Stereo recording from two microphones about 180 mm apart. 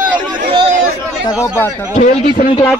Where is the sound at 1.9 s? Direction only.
45° left (ahead or behind).